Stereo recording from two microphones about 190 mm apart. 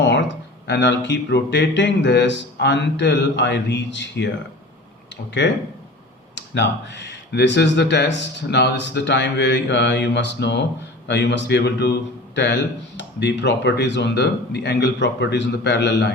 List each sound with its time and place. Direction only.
0.7 s speech: 65° left (ahead or behind)
5.4 s speech: 65° left (ahead or behind)